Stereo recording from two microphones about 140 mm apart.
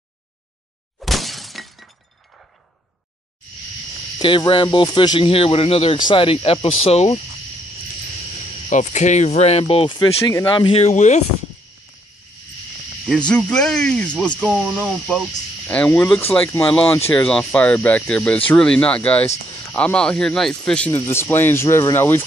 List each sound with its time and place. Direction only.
0.9 s shatter: centre (ahead or behind)
4.2 s speech: 35° left (ahead or behind)
8.6 s speech: 60° left (ahead or behind); by 10.8 s 35° left (ahead or behind)
10.8 s speech: 55° left (ahead or behind)
13.5 s speech: 5° left (ahead or behind)